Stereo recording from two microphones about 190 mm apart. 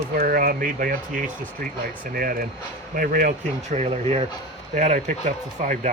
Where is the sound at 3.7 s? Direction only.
35° right (ahead or behind).